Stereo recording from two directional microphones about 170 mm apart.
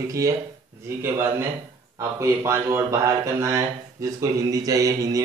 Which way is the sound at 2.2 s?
15° right (ahead or behind).